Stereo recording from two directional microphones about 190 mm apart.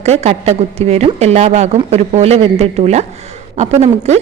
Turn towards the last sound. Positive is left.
turn(degrees=-35)  # may be behind; listen again after turning